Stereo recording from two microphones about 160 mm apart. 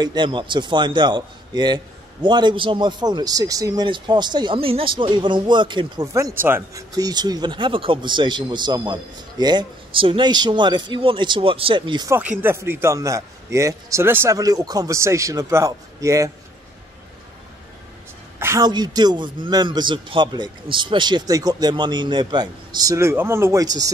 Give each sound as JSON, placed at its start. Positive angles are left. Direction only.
{"t": 0.0, "sound": "speech", "side_deg": -30}
{"t": 12.1, "sound": "speech", "side_deg": -10}
{"t": 18.4, "sound": "a sound", "side_deg": -15}
{"t": 18.7, "sound": "speech", "side_deg": -25}